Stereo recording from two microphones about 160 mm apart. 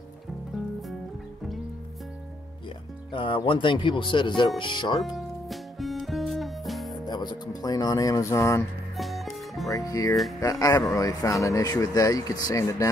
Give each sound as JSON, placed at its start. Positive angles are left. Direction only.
{"t": 3.1, "sound": "speech", "side_deg": 30}
{"t": 5.0, "sound": "music", "side_deg": 0}
{"t": 7.1, "sound": "speech", "side_deg": 25}
{"t": 8.9, "sound": "music", "side_deg": 0}
{"t": 9.7, "sound": "speech", "side_deg": 20}